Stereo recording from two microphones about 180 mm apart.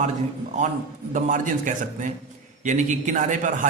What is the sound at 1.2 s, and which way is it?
A man's voice, 45° right (ahead or behind).